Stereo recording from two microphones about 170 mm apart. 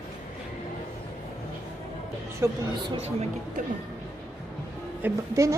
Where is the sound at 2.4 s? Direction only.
15° right (ahead or behind).